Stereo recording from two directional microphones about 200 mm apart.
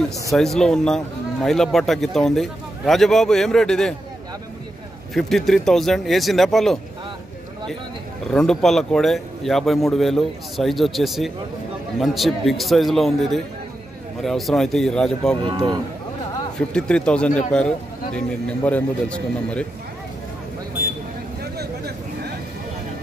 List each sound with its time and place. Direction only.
0.3 s a man's voice: centre (ahead or behind)
5.1 s a man's voice: centre (ahead or behind)
8.3 s a man's voice: 5° left (ahead or behind)
15.5 s speech: 20° right (ahead or behind)
16.5 s a man's voice: 5° left (ahead or behind)
21.4 s vehicle: 55° right (ahead or behind)